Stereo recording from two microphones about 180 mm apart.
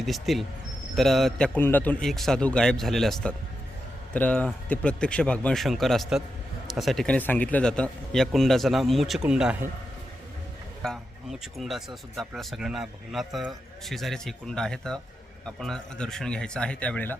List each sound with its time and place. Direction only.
0.0 s speech: centre (ahead or behind)
10.8 s speech: centre (ahead or behind)